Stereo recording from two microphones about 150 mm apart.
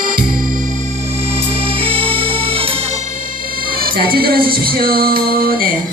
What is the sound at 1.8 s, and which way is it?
Music, 40° right (ahead or behind).